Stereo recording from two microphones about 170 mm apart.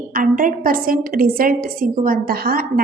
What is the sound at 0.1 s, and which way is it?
A woman's voice, 55° right (ahead or behind).